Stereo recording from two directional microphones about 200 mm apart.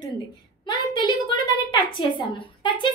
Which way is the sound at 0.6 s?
25° left (ahead or behind).